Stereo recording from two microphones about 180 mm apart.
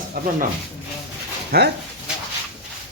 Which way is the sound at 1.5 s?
60° right (ahead or behind).